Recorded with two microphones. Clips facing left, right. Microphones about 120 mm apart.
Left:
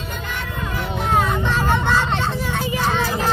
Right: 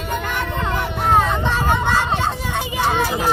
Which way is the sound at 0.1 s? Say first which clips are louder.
Right 8 dB; 60° right (ahead or behind).